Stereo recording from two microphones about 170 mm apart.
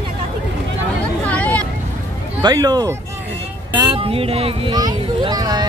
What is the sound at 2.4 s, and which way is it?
Speech, 25° right (ahead or behind).